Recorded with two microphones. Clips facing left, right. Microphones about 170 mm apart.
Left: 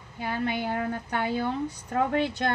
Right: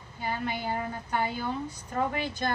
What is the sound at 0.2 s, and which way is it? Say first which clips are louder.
A woman's voice: left 3 dB; 65° left (ahead or behind).